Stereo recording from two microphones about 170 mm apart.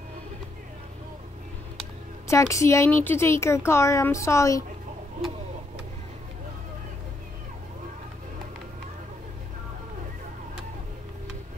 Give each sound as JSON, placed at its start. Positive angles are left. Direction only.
{"t": 2.2, "sound": "speech", "side_deg": 20}